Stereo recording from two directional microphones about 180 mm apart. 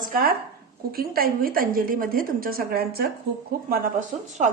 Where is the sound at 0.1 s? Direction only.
55° right (ahead or behind).